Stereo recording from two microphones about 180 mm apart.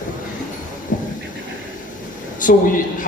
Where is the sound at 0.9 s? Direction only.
45° left (ahead or behind).